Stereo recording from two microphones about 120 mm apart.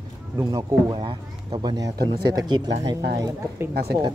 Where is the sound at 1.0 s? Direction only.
45° right (ahead or behind).